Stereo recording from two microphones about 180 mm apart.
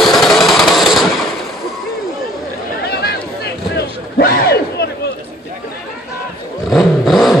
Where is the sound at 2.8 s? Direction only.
60° left (ahead or behind).